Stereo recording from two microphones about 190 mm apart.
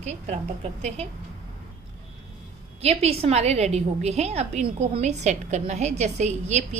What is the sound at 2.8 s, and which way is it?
A woman's voice, 35° right (ahead or behind).